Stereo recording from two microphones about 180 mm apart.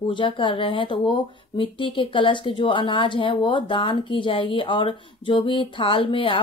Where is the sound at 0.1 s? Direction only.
25° left (ahead or behind).